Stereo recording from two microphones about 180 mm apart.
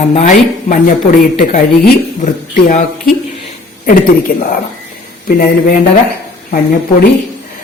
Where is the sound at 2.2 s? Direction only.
45° left (ahead or behind).